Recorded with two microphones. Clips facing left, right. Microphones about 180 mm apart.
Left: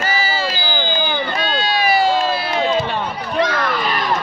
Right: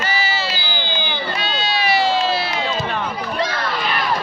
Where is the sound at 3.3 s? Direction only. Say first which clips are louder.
Left 6 dB; 30° right (ahead or behind).